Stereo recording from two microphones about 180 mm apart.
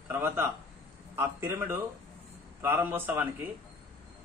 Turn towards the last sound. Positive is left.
turn(degrees=-10)  # may be behind; listen again after turning